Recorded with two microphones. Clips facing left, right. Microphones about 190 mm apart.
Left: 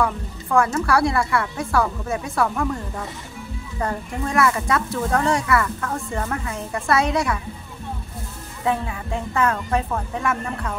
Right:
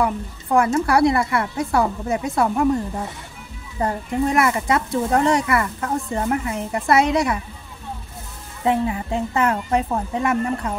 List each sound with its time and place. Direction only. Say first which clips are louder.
0.0 s speech: right 1 dB; 20° right (ahead or behind)
3.8 s speech: right 5 dB; 20° right (ahead or behind)
8.6 s speech: right 4 dB; 20° right (ahead or behind)